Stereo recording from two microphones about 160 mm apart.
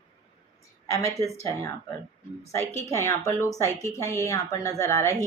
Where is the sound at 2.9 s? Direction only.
20° left (ahead or behind).